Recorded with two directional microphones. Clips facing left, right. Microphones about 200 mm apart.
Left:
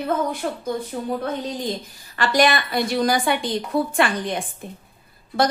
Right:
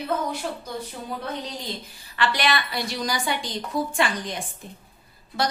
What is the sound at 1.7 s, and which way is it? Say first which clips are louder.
A woman's voice: left 5 dB; 45° left (ahead or behind).